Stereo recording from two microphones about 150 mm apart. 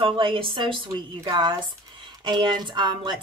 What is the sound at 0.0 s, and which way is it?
A woman's voice, 35° right (ahead or behind).